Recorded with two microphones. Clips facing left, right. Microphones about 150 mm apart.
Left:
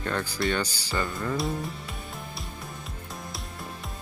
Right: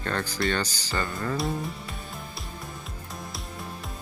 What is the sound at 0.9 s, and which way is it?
Speech, centre (ahead or behind).